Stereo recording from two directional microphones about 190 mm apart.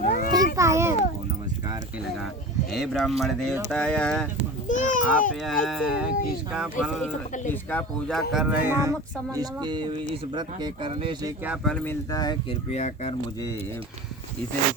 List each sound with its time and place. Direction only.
0.0 s children playing: 40° left (ahead or behind)
0.3 s children playing: 15° right (ahead or behind)
2.7 s speech: centre (ahead or behind)
4.8 s a child's voice: 45° left (ahead or behind)
5.6 s speech: centre (ahead or behind)
7.5 s speech: 10° left (ahead or behind); by 11.3 s 25° right (ahead or behind)
11.4 s speech: centre (ahead or behind)
12.1 s speech: 20° left (ahead or behind)
12.7 s speech: 35° left (ahead or behind)